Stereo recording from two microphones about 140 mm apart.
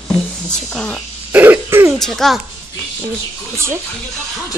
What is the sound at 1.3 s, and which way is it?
Throat clearing, 15° right (ahead or behind).